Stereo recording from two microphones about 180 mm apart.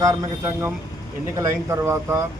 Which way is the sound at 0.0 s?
20° right (ahead or behind).